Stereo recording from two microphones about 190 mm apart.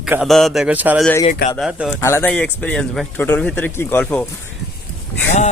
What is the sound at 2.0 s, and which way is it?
A man's voice, 10° left (ahead or behind).